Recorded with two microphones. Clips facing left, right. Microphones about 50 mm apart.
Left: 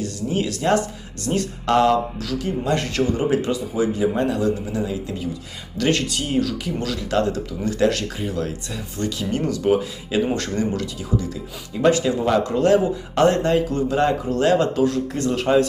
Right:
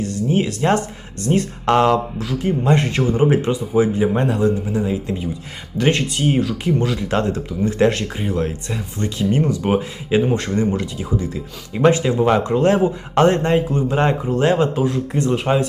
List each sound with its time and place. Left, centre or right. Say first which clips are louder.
0.0 s speech: right 4 dB; right